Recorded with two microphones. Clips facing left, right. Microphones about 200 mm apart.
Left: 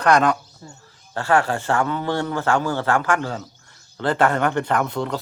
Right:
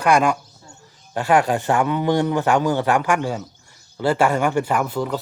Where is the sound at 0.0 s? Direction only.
10° right (ahead or behind).